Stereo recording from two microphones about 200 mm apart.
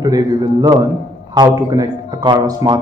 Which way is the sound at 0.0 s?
20° right (ahead or behind).